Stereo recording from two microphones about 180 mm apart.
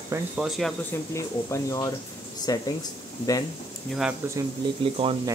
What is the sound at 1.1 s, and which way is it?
Speech, 15° left (ahead or behind).